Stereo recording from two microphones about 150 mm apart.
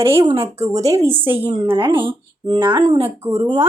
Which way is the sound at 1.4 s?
35° right (ahead or behind).